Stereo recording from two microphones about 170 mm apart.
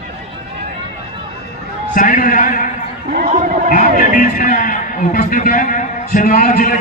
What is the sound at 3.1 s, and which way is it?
Speech, 55° right (ahead or behind).